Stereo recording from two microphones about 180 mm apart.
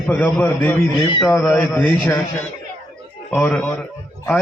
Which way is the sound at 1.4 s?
Centre (ahead or behind).